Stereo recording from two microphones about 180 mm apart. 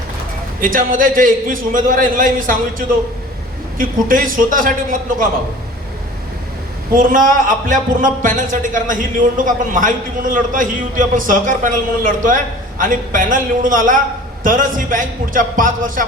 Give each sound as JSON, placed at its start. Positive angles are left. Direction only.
{"t": 0.6, "sound": "a man's voice", "side_deg": -50}
{"t": 6.9, "sound": "a man's voice", "side_deg": -50}
{"t": 12.8, "sound": "a man's voice", "side_deg": -45}